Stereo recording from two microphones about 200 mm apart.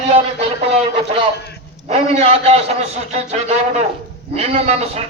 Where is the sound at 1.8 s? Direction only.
35° right (ahead or behind).